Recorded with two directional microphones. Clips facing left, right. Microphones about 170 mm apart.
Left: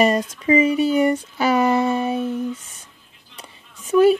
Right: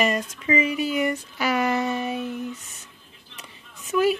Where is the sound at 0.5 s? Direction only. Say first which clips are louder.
Left 7 dB; 35° left (ahead or behind).